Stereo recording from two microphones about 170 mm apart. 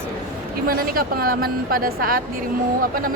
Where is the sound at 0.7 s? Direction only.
60° right (ahead or behind).